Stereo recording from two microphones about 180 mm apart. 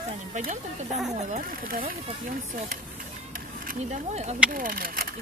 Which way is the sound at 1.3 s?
55° right (ahead or behind).